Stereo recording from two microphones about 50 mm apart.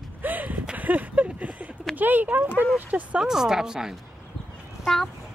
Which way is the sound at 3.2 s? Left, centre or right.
Centre.